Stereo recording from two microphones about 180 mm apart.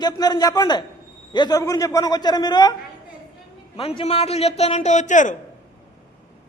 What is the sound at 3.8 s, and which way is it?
A man's voice, 35° left (ahead or behind).